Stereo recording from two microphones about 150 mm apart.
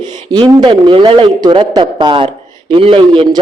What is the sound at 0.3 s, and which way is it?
A man's voice, 30° right (ahead or behind).